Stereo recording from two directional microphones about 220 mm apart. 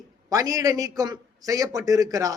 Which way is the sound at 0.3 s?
15° right (ahead or behind).